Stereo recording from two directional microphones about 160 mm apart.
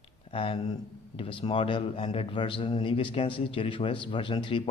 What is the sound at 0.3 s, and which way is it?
A man's voice, 35° left (ahead or behind).